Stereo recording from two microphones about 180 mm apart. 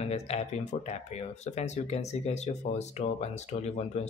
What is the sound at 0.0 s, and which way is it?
Speech, 35° left (ahead or behind).